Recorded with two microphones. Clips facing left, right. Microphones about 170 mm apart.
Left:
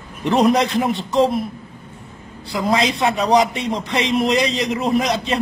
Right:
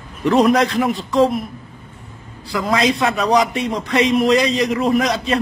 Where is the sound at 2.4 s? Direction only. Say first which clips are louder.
Right 1 dB; 25° left (ahead or behind).